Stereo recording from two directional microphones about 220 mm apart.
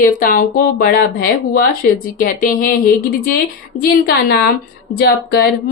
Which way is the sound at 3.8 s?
45° left (ahead or behind).